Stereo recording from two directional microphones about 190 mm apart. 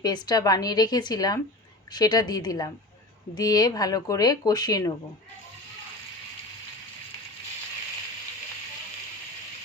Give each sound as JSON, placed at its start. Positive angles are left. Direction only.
{"t": 0.0, "sound": "speech", "side_deg": 20}